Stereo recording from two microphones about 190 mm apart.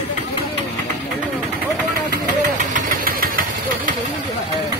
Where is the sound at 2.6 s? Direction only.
50° right (ahead or behind).